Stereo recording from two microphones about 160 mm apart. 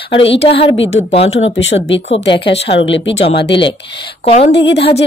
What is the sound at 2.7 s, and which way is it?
Speech, 40° left (ahead or behind).